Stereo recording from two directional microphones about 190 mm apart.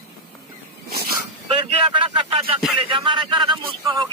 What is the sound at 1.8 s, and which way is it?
Speech, 30° right (ahead or behind).